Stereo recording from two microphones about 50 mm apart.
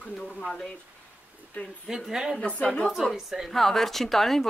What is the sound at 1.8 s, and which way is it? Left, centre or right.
Speech, centre.